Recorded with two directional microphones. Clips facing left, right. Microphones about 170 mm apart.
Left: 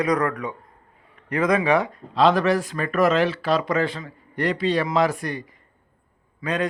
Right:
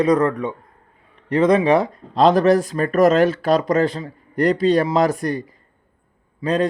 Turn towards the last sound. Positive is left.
turn(degrees=-30)  # may be behind; listen again after turning